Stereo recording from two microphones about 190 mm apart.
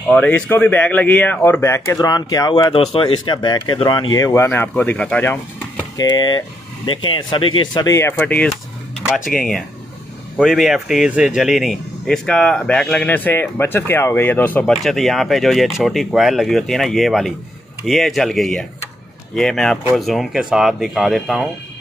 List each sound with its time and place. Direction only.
0.1 s speech: 10° left (ahead or behind)
5.9 s speech: 20° left (ahead or behind); by 21.5 s centre (ahead or behind)